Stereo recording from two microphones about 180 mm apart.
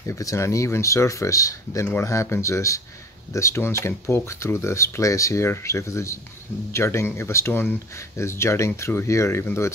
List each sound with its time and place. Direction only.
0.0 s speech: 15° left (ahead or behind)